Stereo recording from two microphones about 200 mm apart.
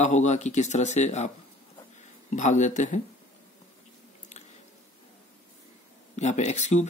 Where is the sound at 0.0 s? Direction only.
35° left (ahead or behind).